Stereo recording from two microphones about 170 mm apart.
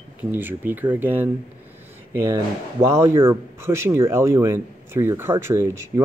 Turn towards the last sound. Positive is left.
turn(degrees=-15)  # may be behind; listen again after turning